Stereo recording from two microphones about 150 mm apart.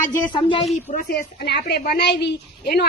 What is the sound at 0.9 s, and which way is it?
A woman's voice, 75° left (ahead or behind).